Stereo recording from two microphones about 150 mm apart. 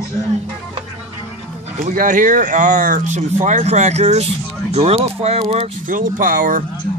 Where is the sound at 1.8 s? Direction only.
60° right (ahead or behind); by 5.6 s 40° right (ahead or behind).